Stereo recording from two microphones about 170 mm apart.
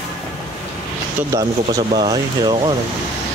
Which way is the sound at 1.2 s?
10° right (ahead or behind).